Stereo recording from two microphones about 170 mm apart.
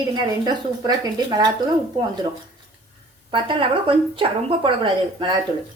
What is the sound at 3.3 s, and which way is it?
A woman's voice, 30° right (ahead or behind).